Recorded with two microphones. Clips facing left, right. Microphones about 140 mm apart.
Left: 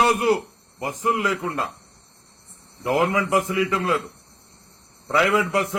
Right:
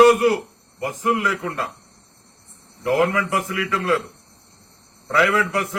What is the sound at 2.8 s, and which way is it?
A man's voice, 20° left (ahead or behind).